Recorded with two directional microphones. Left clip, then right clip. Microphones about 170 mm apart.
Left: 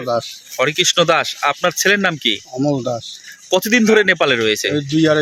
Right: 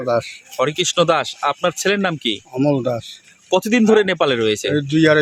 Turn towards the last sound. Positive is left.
turn(degrees=-15)  # may be behind; listen again after turning